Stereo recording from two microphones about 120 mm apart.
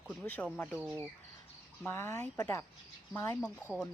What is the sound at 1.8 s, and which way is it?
Speech, 20° left (ahead or behind).